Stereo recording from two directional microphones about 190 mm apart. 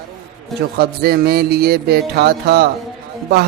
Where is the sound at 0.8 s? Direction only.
55° right (ahead or behind).